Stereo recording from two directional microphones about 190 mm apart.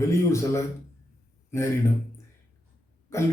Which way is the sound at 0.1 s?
15° left (ahead or behind).